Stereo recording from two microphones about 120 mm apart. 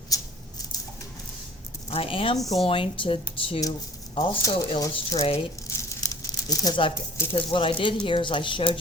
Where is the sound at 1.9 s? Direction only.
50° left (ahead or behind).